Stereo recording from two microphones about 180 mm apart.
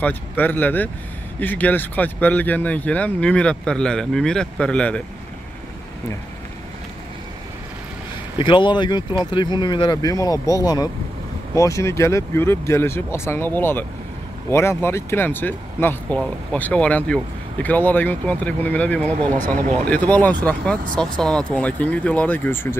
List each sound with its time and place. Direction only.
0.0 s speech: 10° left (ahead or behind)
8.4 s speech: 25° left (ahead or behind); by 19.1 s 10° left (ahead or behind)
19.3 s speech: 40° right (ahead or behind)
19.8 s speech: 5° left (ahead or behind)